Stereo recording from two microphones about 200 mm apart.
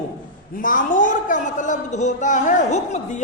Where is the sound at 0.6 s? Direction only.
40° left (ahead or behind).